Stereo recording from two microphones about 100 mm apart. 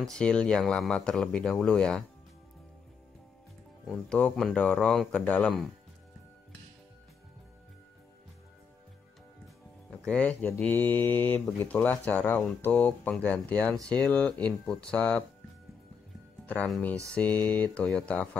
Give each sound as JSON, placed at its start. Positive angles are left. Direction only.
{"t": 0.0, "sound": "speech", "side_deg": 10}
{"t": 4.1, "sound": "speech", "side_deg": 5}
{"t": 9.8, "sound": "music", "side_deg": 10}
{"t": 10.7, "sound": "speech", "side_deg": 20}
{"t": 16.4, "sound": "speech", "side_deg": 10}